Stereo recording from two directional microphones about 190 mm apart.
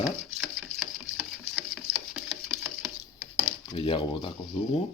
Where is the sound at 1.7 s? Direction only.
5° right (ahead or behind).